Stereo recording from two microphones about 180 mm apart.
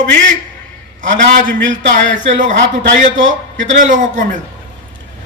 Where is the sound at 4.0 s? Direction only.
45° right (ahead or behind).